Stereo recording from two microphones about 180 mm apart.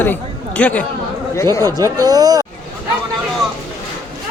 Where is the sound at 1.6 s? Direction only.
20° right (ahead or behind).